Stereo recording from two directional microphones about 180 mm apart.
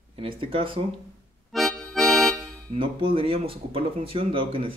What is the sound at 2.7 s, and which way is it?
Speech, 30° right (ahead or behind).